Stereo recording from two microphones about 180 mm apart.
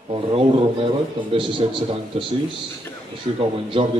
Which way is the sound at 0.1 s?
30° right (ahead or behind).